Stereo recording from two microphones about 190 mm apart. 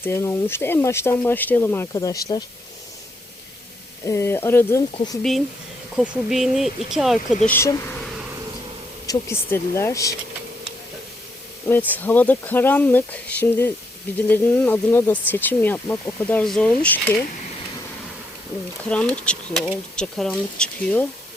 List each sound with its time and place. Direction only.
0.0 s speech: 15° left (ahead or behind)
4.0 s speech: 15° left (ahead or behind)
6.0 s speech: centre (ahead or behind)
7.4 s speech: 15° left (ahead or behind)
9.3 s speech: 15° left (ahead or behind)
11.9 s speech: 10° left (ahead or behind)
18.9 s speech: 5° left (ahead or behind)